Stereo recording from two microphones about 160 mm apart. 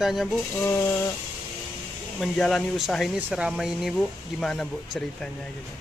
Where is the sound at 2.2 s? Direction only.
5° left (ahead or behind).